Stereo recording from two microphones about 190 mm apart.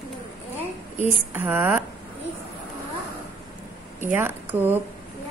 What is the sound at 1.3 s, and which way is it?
Speech, 10° right (ahead or behind).